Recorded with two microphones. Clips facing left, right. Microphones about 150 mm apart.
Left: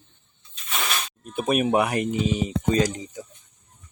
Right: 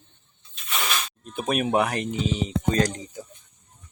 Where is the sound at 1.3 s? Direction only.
5° left (ahead or behind).